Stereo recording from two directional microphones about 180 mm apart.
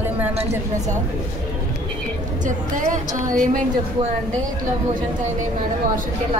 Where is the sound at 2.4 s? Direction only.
45° right (ahead or behind).